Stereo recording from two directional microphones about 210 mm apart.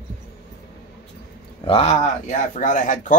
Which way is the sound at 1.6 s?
25° left (ahead or behind).